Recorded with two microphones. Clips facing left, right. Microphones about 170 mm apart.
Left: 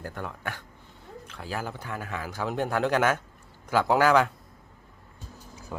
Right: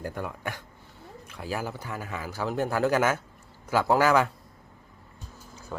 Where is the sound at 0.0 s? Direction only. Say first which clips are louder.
Right 2 dB; 10° right (ahead or behind).